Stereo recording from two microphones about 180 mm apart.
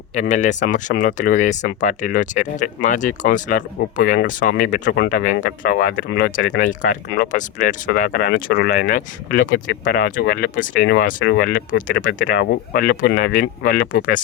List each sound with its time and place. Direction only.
0.1 s speech: 45° left (ahead or behind); by 6.6 s 60° left (ahead or behind)
6.6 s speech: 45° left (ahead or behind)